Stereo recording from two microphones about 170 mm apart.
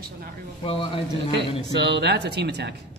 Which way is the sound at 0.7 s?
30° left (ahead or behind).